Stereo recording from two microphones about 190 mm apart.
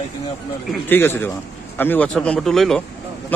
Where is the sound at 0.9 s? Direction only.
10° left (ahead or behind).